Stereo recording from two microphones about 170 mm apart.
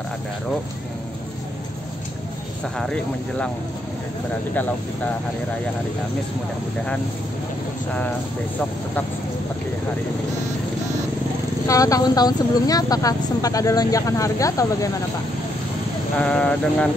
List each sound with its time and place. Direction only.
2.8 s speech: 5° left (ahead or behind)
11.6 s speech: 20° left (ahead or behind)
16.2 s speech: 5° left (ahead or behind)